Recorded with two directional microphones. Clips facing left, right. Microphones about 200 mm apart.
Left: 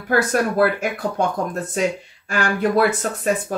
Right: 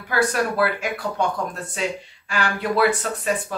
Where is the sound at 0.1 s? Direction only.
45° left (ahead or behind).